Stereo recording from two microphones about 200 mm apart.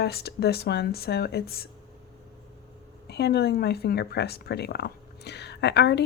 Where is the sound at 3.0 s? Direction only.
55° left (ahead or behind).